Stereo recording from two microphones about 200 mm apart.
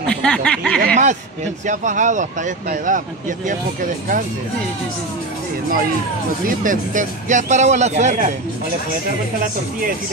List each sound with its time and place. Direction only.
0.1 s a sound: 5° left (ahead or behind)
0.7 s speech: 45° right (ahead or behind)
6.4 s speech: 40° right (ahead or behind)